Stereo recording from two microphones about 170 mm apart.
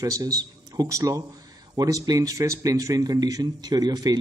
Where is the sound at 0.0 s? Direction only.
20° right (ahead or behind).